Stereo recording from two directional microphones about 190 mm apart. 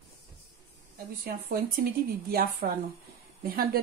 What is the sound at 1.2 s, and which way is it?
Speech, 50° right (ahead or behind).